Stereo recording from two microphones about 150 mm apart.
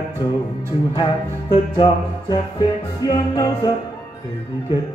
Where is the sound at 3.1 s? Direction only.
25° left (ahead or behind).